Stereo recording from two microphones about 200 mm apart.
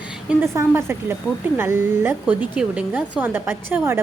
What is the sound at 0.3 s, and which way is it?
A woman's voice, 10° right (ahead or behind).